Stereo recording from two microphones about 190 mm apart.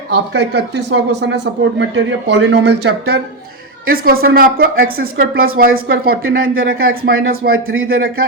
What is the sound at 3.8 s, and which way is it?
Speech, 50° right (ahead or behind).